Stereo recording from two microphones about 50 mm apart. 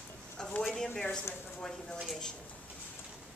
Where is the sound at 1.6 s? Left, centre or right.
Centre.